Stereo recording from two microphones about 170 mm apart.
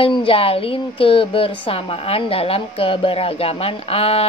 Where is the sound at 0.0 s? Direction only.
30° left (ahead or behind).